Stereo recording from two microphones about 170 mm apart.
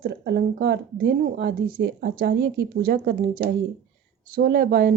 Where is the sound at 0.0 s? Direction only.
80° right.